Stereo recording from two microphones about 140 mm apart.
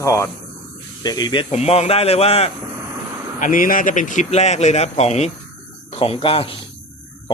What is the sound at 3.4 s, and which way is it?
A man's voice, 75° left (ahead or behind).